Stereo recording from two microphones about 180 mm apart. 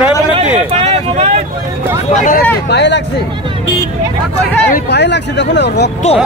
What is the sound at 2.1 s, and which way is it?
Speech, 50° left (ahead or behind).